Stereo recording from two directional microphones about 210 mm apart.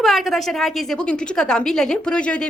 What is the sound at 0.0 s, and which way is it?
A woman's voice, centre (ahead or behind).